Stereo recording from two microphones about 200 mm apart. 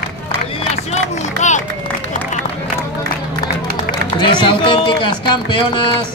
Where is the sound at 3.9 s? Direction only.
20° left (ahead or behind).